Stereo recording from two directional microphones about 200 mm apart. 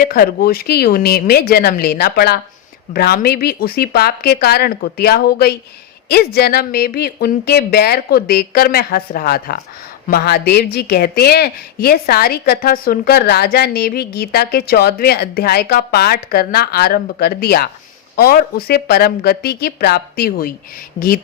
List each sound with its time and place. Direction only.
0.0 s a woman's voice: 45° left (ahead or behind)